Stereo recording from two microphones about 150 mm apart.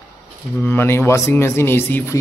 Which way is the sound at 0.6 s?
15° left (ahead or behind).